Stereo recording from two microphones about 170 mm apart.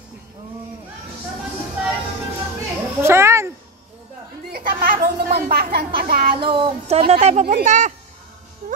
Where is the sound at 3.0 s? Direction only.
15° right (ahead or behind).